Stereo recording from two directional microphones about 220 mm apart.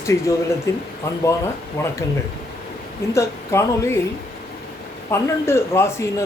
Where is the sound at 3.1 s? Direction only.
15° left (ahead or behind).